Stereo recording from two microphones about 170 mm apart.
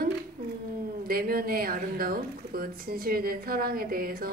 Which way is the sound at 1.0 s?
60° right (ahead or behind).